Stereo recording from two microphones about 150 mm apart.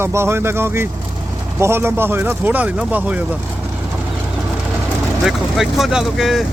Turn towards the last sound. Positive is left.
turn(degrees=0)  # may be behind; listen again after turning